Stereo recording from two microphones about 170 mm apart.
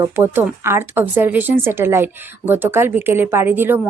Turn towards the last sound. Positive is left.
turn(degrees=-10)  # may be behind; listen again after turning